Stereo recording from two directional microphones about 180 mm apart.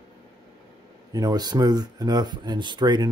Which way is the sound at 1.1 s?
20° right (ahead or behind).